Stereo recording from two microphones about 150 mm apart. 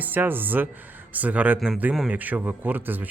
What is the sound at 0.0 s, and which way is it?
A man's voice, 15° right (ahead or behind).